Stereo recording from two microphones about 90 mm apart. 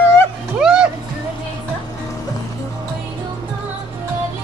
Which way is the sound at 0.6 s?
10° right (ahead or behind).